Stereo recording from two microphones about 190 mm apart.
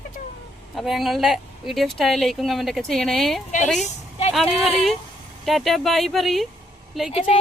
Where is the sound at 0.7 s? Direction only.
Centre (ahead or behind).